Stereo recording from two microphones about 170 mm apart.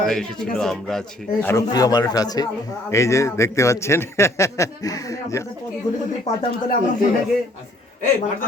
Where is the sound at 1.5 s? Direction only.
20° left (ahead or behind).